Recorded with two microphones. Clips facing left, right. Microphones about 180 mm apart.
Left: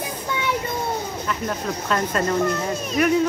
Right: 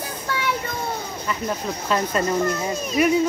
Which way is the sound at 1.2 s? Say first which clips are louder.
Right 2 dB; 5° right (ahead or behind).